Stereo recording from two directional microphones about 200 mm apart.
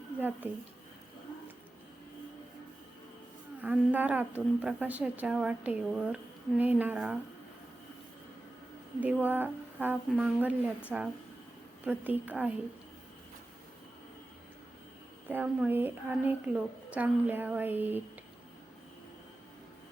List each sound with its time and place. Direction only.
0.2 s a woman's voice: 10° right (ahead or behind)
3.6 s a woman's voice: 10° right (ahead or behind)
9.0 s a woman's voice: 10° right (ahead or behind)
15.3 s a woman's voice: 10° right (ahead or behind)